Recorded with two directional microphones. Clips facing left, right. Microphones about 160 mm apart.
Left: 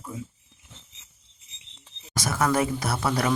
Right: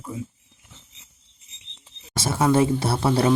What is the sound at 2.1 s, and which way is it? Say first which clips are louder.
Speech: right 4 dB; 25° right (ahead or behind).